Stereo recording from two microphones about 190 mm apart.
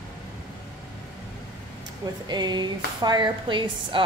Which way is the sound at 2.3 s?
25° right (ahead or behind).